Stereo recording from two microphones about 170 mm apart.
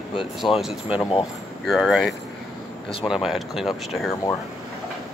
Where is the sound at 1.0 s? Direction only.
30° left (ahead or behind).